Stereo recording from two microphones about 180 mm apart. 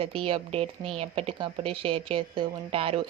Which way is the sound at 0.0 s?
30° right (ahead or behind).